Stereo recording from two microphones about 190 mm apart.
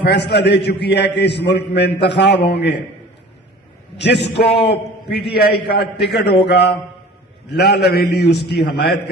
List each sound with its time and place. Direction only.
0.0 s a man's voice: 60° left (ahead or behind)
3.9 s a man's voice: 65° left (ahead or behind)